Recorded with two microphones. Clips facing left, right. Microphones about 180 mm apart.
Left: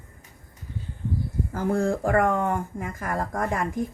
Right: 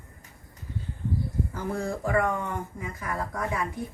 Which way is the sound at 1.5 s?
50° left (ahead or behind).